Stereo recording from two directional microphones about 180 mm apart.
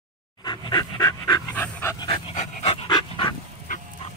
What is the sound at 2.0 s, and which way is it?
Dog, 30° left (ahead or behind).